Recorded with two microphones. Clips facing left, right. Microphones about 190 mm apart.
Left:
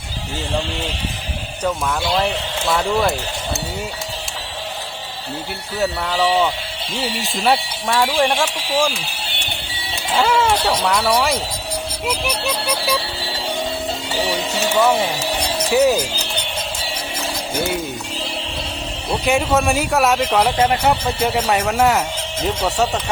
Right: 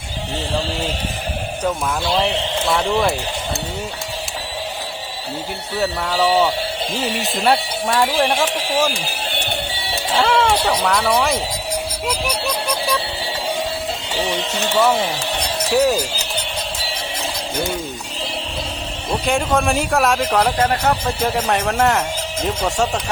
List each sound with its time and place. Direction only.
2.1 s speech: centre (ahead or behind)
5.8 s speech: 5° right (ahead or behind)
10.2 s speech: 5° left (ahead or behind)
12.5 s speech: 5° left (ahead or behind)
14.2 s speech: 5° left (ahead or behind)
15.7 s speech: centre (ahead or behind)
19.1 s speech: 5° left (ahead or behind)